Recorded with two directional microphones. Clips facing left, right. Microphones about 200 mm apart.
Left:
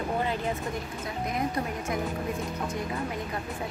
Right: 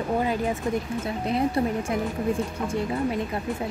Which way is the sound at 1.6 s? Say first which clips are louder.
Right 7 dB; 30° right (ahead or behind).